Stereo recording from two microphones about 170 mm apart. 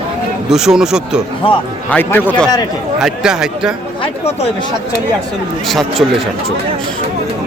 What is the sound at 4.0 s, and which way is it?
Speech, 35° left (ahead or behind).